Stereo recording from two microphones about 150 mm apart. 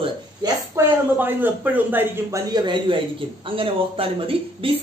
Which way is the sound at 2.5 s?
30° right (ahead or behind).